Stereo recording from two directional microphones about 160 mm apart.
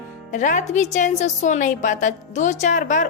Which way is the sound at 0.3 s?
50° left (ahead or behind).